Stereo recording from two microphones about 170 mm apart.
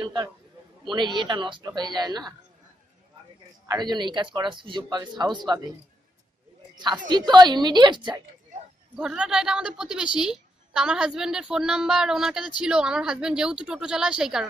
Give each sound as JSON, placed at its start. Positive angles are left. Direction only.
{"t": 0.0, "sound": "a man's voice", "side_deg": -25}
{"t": 3.6, "sound": "speech", "side_deg": -25}
{"t": 6.8, "sound": "speech", "side_deg": -25}
{"t": 8.9, "sound": "a woman's voice", "side_deg": -5}